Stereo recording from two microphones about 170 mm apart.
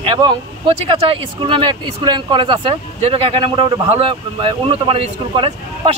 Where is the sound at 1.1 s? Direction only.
30° right (ahead or behind).